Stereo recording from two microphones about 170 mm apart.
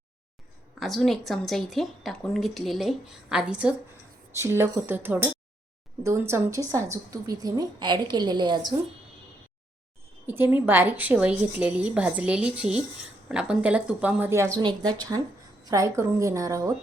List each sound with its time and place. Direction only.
0.8 s a woman's voice: centre (ahead or behind); by 8.7 s 25° right (ahead or behind)
10.2 s a woman's voice: 10° right (ahead or behind)
14.6 s a woman's voice: 25° right (ahead or behind)